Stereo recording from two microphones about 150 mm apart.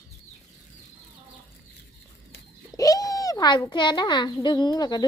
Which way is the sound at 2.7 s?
25° left (ahead or behind).